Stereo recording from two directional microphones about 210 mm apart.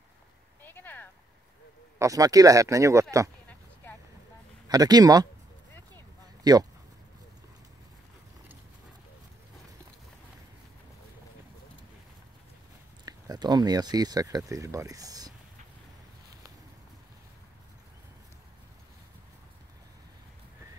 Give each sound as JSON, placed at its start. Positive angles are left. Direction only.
{"t": 0.6, "sound": "a sound", "side_deg": 10}
{"t": 2.0, "sound": "speech", "side_deg": -15}
{"t": 4.6, "sound": "speech", "side_deg": -20}
{"t": 6.5, "sound": "speech", "side_deg": -20}
{"t": 13.0, "sound": "speech", "side_deg": -20}